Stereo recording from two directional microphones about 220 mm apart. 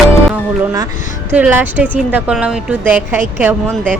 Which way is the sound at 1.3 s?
5° right (ahead or behind).